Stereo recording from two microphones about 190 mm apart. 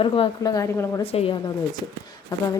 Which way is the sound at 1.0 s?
30° left (ahead or behind).